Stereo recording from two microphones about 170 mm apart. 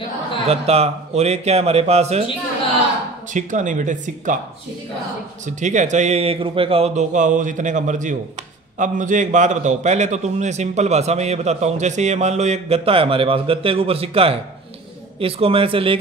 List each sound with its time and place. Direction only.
0.5 s a man's voice: 40° right (ahead or behind)
3.3 s speech: 45° right (ahead or behind)
5.6 s a man's voice: 45° right (ahead or behind)